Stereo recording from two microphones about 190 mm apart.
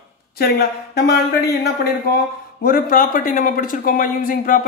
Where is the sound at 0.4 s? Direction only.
55° left (ahead or behind).